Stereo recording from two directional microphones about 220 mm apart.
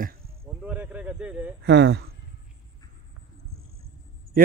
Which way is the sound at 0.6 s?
5° right (ahead or behind).